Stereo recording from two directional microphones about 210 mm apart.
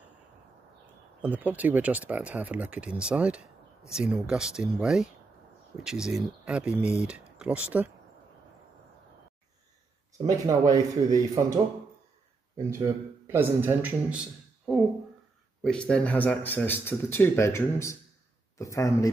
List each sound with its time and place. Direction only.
1.2 s speech: 10° right (ahead or behind)
10.1 s a man's voice: 15° right (ahead or behind)
15.6 s speech: 5° left (ahead or behind)